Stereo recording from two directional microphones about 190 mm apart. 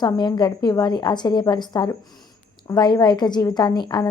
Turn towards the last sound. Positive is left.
turn(degrees=20)  # may be behind; listen again after turning